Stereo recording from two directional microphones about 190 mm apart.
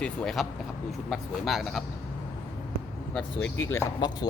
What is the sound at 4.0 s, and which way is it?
Speech, 20° left (ahead or behind).